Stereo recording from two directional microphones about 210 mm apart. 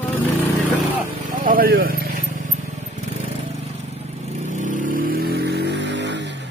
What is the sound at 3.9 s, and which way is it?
Vehicle, 30° right (ahead or behind).